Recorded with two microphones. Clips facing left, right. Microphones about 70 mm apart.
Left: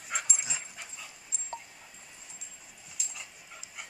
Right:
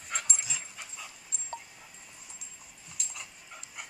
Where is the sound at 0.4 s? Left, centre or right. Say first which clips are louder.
Left 1 dB; left.